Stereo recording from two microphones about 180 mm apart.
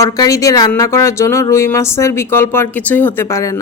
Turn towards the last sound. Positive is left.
turn(degrees=15)  # may be behind; listen again after turning